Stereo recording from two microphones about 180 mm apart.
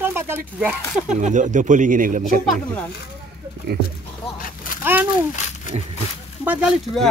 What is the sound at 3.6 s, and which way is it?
Speech, 65° right (ahead or behind).